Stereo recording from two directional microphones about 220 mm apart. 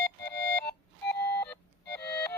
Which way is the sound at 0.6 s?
50° left (ahead or behind).